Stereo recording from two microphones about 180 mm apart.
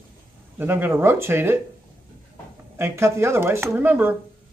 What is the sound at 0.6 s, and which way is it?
Speech, 10° right (ahead or behind).